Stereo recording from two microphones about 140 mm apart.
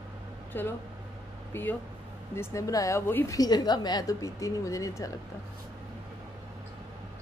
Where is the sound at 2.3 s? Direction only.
20° left (ahead or behind).